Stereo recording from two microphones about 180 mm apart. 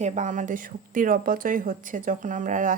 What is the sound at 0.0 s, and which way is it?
A woman's voice, 45° right (ahead or behind).